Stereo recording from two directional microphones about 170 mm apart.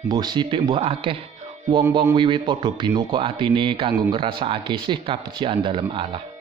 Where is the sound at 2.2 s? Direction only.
30° right (ahead or behind).